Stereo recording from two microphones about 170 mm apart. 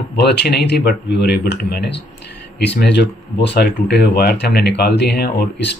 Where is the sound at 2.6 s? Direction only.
90° left.